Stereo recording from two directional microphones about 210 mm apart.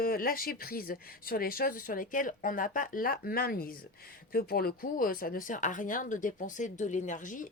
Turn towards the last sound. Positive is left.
turn(degrees=40)  # may be behind; listen again after turning